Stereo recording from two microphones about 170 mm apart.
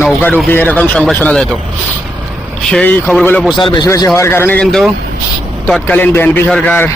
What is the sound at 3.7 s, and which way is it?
A man's voice, 20° left (ahead or behind).